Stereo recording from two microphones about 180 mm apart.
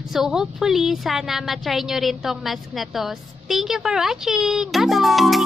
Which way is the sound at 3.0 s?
Centre (ahead or behind).